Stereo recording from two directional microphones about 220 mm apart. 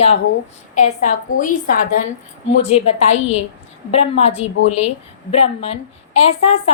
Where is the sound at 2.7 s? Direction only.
30° left (ahead or behind).